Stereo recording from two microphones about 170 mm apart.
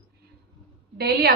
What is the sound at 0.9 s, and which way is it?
Speech, 70° right (ahead or behind).